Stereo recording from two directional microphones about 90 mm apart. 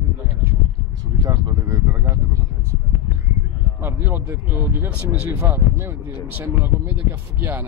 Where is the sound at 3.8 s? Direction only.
25° right (ahead or behind).